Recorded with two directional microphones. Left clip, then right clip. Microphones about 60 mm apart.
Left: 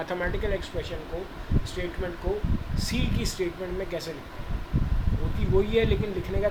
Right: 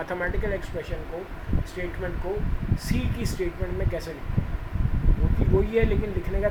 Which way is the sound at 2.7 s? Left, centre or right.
Right.